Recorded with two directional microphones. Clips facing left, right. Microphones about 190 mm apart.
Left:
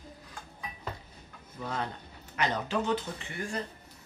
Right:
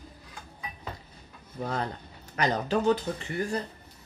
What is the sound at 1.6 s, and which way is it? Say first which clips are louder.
Speech: right 4 dB; 40° right (ahead or behind).